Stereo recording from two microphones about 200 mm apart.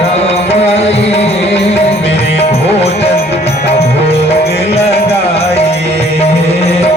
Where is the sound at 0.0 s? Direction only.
30° left (ahead or behind).